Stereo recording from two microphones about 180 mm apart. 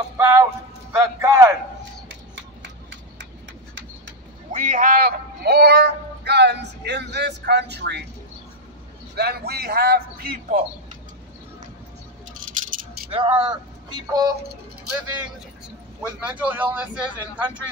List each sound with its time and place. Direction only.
0.2 s speech: 15° right (ahead or behind)
4.5 s speech: 45° right (ahead or behind); by 8.0 s 65° right (ahead or behind)
9.1 s a man's voice: 60° right (ahead or behind)
13.1 s speech: 30° right (ahead or behind)
16.2 s speech: 10° right (ahead or behind)